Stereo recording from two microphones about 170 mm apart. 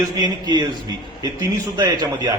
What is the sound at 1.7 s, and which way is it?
Speech, 25° right (ahead or behind).